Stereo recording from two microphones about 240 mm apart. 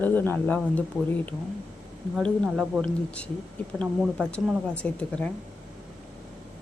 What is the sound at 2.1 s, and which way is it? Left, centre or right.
A woman's voice, centre.